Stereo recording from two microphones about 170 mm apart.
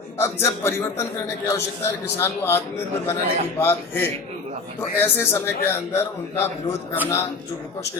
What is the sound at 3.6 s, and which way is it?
A man's voice, 15° left (ahead or behind).